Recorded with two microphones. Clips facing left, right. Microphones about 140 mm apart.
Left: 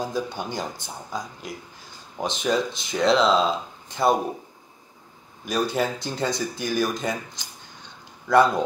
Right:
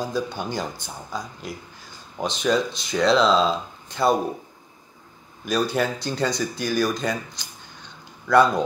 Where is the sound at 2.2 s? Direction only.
20° left (ahead or behind).